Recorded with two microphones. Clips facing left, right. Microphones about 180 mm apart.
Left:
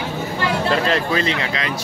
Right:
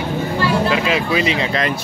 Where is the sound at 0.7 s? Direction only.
5° right (ahead or behind).